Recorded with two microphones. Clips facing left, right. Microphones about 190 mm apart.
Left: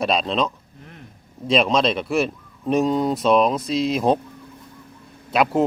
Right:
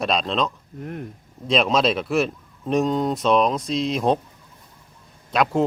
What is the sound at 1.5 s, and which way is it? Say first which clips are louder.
Speech: left 1 dB; centre (ahead or behind).